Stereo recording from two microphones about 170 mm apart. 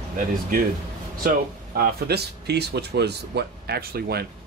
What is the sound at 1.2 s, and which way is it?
Speech, 65° right (ahead or behind).